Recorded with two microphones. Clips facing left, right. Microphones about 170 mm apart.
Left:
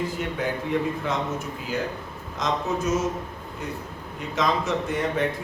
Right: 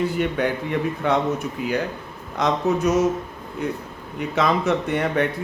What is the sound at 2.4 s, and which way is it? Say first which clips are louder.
Speech: right 5 dB; 65° right (ahead or behind).